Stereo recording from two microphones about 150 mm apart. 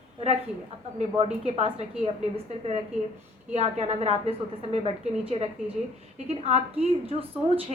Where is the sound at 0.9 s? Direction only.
40° right (ahead or behind).